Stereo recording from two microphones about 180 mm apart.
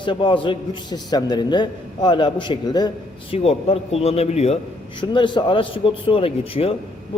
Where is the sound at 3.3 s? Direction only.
35° left (ahead or behind).